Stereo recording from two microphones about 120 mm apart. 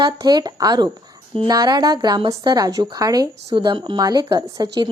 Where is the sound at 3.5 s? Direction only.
40° right (ahead or behind).